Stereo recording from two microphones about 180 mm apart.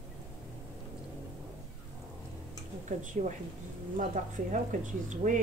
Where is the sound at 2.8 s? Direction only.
45° right (ahead or behind).